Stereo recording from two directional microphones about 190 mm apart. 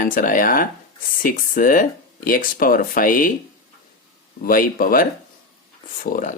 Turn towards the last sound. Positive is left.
turn(degrees=45)  # may be behind; listen again after turning